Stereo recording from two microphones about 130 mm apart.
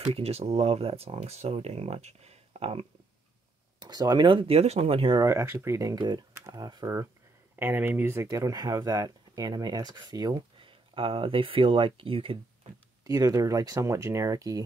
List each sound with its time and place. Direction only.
0.1 s speech: 50° right (ahead or behind)
3.8 s speech: 30° right (ahead or behind); by 5.1 s 50° right (ahead or behind)
5.1 s speech: 25° right (ahead or behind)
7.5 s speech: 15° right (ahead or behind)
8.3 s speech: 30° right (ahead or behind)
13.0 s speech: 25° right (ahead or behind)